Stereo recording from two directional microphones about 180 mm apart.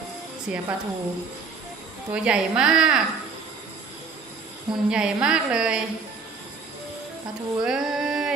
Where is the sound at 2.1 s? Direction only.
5° right (ahead or behind).